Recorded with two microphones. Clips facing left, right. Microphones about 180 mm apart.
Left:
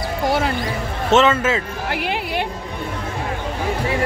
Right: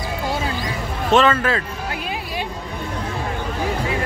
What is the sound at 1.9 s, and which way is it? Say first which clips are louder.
Speech: left 4 dB; 75° left (ahead or behind).